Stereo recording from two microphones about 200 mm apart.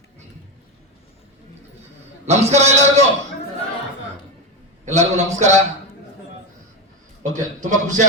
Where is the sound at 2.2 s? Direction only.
35° right (ahead or behind).